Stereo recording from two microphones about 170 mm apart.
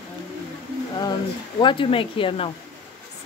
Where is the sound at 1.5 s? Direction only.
30° left (ahead or behind).